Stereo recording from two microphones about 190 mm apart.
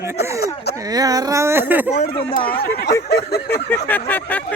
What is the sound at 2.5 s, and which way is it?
Speech, 55° left (ahead or behind).